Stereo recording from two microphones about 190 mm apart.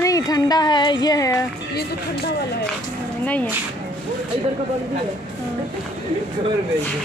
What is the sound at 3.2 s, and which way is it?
Speech, 10° left (ahead or behind).